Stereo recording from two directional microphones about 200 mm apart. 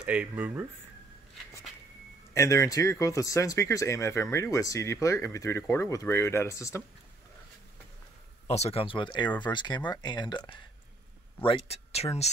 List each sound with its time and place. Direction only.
0.0 s speech: 5° right (ahead or behind)
2.3 s speech: 15° left (ahead or behind)
8.5 s speech: 30° left (ahead or behind)